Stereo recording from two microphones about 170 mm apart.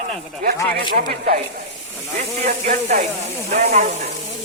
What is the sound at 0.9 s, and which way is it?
Speech, 60° right (ahead or behind).